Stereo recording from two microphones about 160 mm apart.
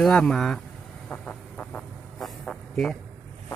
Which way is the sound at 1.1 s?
5° left (ahead or behind).